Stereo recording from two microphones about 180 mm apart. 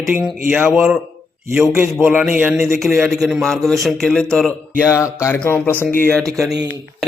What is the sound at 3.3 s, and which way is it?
Mantra, centre (ahead or behind).